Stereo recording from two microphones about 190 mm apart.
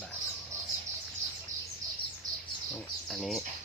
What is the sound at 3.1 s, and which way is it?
Bird, centre (ahead or behind).